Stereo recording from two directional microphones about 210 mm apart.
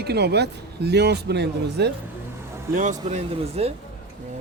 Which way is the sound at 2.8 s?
35° right (ahead or behind).